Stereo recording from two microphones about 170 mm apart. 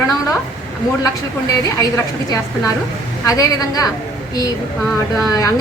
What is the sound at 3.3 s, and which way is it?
Speech, 20° left (ahead or behind).